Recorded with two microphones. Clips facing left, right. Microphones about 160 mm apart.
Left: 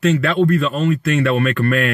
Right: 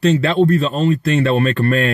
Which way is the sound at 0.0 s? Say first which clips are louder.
Right 2 dB; 30° right (ahead or behind).